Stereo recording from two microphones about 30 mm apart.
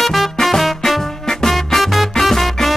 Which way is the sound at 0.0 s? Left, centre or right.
Centre.